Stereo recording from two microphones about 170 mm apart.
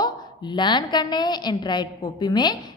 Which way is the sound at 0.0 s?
25° left (ahead or behind).